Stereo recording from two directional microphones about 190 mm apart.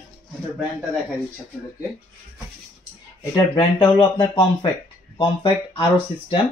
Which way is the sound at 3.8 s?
20° left (ahead or behind).